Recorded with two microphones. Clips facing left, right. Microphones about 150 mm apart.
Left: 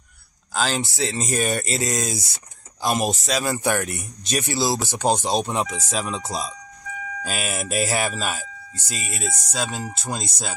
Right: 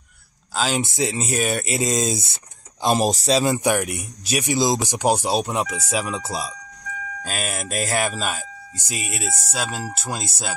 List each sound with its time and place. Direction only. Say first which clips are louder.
0.6 s speech: right 1 dB; 5° right (ahead or behind)
0.8 s speech: right 2 dB; 15° right (ahead or behind)
1.8 s speech: right 3 dB; 20° right (ahead or behind)
3.4 s speech: right 3 dB; 15° right (ahead or behind); by 8.5 s centre (ahead or behind)
8.7 s speech: right 2 dB; 15° right (ahead or behind)